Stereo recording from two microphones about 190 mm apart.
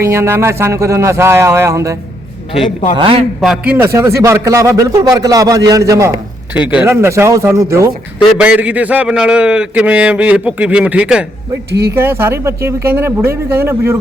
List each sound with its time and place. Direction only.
0.0 s a man's voice: 15° right (ahead or behind)
3.0 s a man's voice: 30° right (ahead or behind)
3.4 s a man's voice: 5° right (ahead or behind)
11.7 s speech: 60° right (ahead or behind)
11.9 s a man's voice: 15° right (ahead or behind)